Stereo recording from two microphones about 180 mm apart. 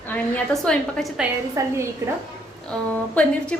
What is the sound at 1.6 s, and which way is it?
Speech, 15° right (ahead or behind).